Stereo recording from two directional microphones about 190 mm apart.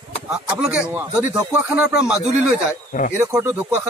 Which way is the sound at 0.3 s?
5° right (ahead or behind).